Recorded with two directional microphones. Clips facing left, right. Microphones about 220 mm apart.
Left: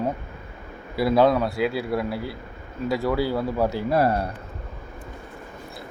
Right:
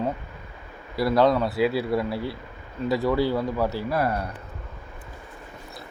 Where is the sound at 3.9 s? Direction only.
30° left (ahead or behind).